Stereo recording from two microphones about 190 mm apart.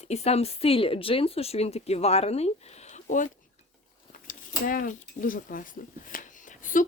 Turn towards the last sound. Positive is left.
turn(degrees=45)  # may be behind; listen again after turning